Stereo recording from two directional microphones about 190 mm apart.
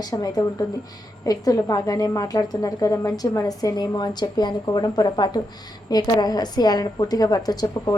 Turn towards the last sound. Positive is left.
turn(degrees=20)  # may be behind; listen again after turning